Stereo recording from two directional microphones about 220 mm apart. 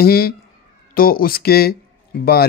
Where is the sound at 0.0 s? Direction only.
45° left (ahead or behind).